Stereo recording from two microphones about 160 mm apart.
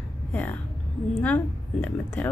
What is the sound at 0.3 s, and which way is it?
A woman's voice, 10° left (ahead or behind).